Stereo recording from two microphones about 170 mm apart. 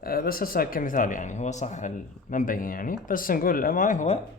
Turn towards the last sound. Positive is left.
turn(degrees=45)  # may be behind; listen again after turning